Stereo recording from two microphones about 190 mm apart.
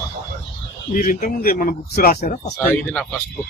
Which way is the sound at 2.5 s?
5° left (ahead or behind).